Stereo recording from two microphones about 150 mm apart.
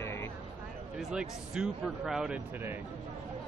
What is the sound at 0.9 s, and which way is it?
Speech, centre (ahead or behind).